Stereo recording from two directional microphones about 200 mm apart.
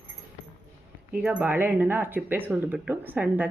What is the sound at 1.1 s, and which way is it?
Speech, 5° right (ahead or behind).